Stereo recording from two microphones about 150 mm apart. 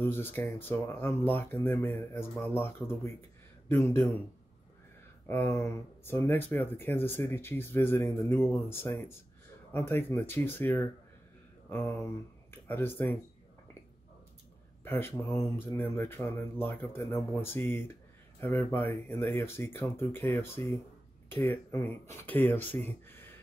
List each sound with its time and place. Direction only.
0.0 s speech: 15° left (ahead or behind)
5.3 s speech: 15° left (ahead or behind)
12.0 s speech: 15° left (ahead or behind)
14.9 s speech: 15° left (ahead or behind)
22.8 s a sound: 15° left (ahead or behind)